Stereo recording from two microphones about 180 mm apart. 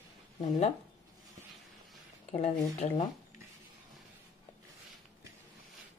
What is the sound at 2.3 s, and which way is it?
Speech, 35° left (ahead or behind).